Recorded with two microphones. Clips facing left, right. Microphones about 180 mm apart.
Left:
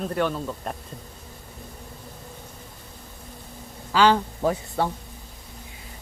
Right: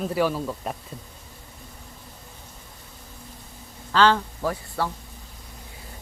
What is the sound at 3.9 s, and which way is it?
Speech, 10° left (ahead or behind).